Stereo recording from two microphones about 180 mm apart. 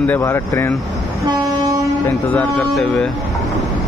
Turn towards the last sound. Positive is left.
turn(degrees=5)  # may be behind; listen again after turning